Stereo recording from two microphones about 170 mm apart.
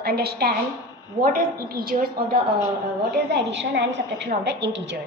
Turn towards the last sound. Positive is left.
turn(degrees=-90)